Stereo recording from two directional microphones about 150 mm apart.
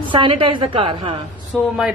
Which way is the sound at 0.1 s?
35° right (ahead or behind).